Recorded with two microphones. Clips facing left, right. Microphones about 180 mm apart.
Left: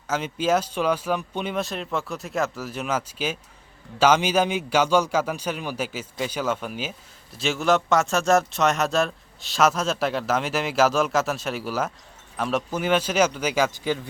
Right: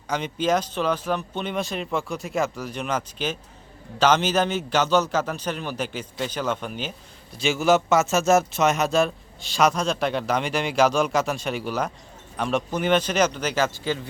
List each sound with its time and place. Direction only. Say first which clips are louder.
0.1 s a man's voice: even; 5° left (ahead or behind)